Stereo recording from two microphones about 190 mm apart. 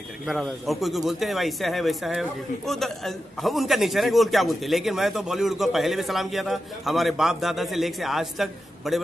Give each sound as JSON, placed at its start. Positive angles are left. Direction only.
{"t": 0.3, "sound": "speech", "side_deg": 0}